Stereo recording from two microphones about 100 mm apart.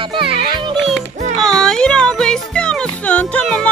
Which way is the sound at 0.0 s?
60° right (ahead or behind).